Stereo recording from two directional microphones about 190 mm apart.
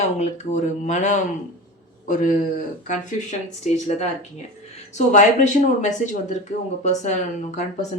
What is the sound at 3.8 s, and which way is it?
Speech, 35° left (ahead or behind).